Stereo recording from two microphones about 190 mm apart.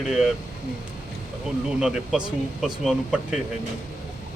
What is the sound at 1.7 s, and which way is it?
Speech, 5° right (ahead or behind).